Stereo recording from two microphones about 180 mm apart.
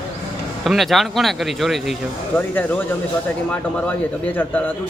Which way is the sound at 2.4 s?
10° left (ahead or behind).